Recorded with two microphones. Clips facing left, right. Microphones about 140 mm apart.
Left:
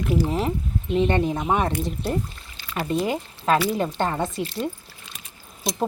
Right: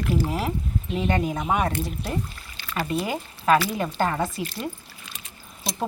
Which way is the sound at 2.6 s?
20° left (ahead or behind).